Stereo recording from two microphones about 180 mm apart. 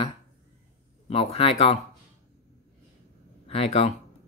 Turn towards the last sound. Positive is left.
turn(degrees=35)  # may be behind; listen again after turning